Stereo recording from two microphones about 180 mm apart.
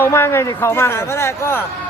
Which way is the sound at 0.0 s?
10° left (ahead or behind).